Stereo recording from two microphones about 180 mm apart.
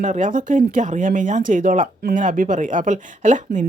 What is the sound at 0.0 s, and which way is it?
Speech, 45° right (ahead or behind).